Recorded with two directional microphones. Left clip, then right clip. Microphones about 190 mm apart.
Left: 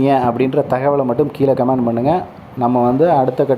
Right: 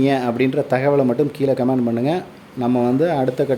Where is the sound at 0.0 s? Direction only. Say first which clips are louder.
Left 4 dB; 5° right (ahead or behind).